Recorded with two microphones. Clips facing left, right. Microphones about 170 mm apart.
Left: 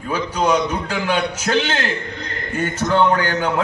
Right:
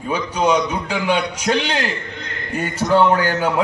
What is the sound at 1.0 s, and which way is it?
Speech, 30° right (ahead or behind).